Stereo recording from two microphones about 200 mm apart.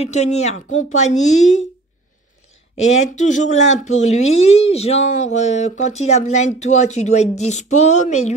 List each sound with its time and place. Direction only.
0.0 s speech: 35° left (ahead or behind)
2.8 s speech: 35° left (ahead or behind)